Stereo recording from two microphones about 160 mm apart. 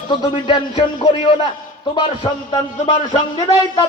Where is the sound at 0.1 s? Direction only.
30° left (ahead or behind).